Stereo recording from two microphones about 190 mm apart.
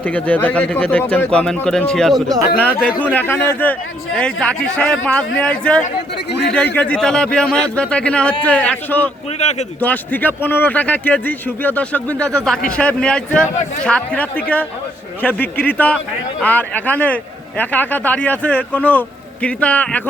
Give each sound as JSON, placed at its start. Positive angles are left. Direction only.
{"t": 0.0, "sound": "speech", "side_deg": 5}
{"t": 9.4, "sound": "speech", "side_deg": 35}
{"t": 9.8, "sound": "speech", "side_deg": 10}